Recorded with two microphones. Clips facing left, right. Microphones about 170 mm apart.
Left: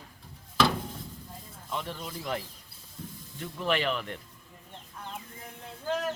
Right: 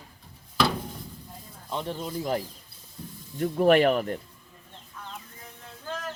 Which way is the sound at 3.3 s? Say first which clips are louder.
Right 10 dB; 50° right (ahead or behind).